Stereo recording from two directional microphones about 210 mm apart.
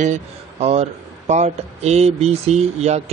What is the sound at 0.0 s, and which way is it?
Speech, 30° right (ahead or behind).